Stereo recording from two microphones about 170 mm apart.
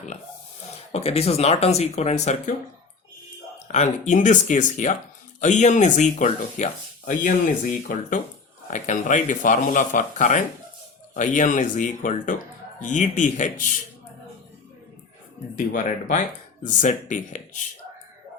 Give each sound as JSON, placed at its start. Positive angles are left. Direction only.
{"t": 0.9, "sound": "speech", "side_deg": 35}
{"t": 3.7, "sound": "speech", "side_deg": 45}
{"t": 15.5, "sound": "speech", "side_deg": 50}